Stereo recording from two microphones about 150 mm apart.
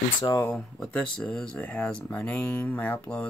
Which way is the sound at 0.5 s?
10° left (ahead or behind).